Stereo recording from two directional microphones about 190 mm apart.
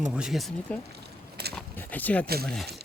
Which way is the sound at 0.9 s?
60° right (ahead or behind).